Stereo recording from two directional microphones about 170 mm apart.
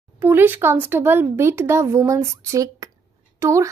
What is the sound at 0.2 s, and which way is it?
Speech, 10° right (ahead or behind).